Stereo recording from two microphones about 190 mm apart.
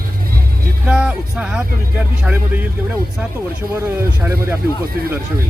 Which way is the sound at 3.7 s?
15° right (ahead or behind).